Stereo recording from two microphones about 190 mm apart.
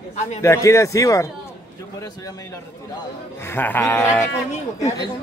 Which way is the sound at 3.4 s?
10° left (ahead or behind).